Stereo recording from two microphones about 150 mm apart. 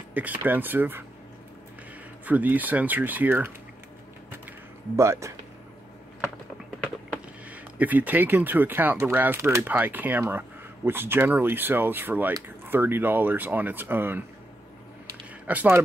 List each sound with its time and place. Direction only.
0.1 s speech: 10° right (ahead or behind)
2.2 s speech: 10° right (ahead or behind)
4.5 s a sound: 20° right (ahead or behind)
7.4 s speech: 10° right (ahead or behind)
15.4 s speech: 10° right (ahead or behind)